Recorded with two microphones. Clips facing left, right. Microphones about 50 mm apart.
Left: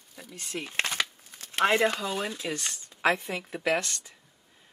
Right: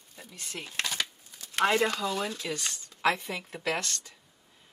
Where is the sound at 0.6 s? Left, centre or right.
Left.